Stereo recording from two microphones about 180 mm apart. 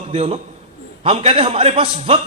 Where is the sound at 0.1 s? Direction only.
35° right (ahead or behind).